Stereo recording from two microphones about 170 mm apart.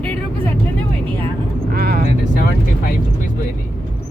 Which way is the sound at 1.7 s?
65° right (ahead or behind).